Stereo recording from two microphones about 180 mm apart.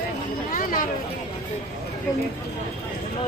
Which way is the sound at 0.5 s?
50° left (ahead or behind).